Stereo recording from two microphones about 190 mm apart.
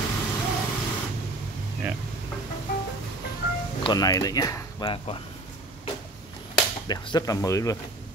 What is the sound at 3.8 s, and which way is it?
Speech, 20° left (ahead or behind).